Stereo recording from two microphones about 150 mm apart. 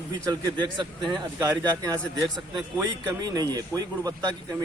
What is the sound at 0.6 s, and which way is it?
Speech, 30° right (ahead or behind).